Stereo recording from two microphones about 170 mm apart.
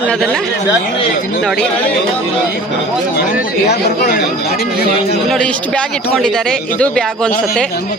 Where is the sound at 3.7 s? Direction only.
75° left (ahead or behind).